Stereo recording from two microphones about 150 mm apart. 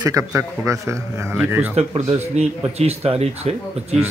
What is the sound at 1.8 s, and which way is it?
Speech, 45° right (ahead or behind).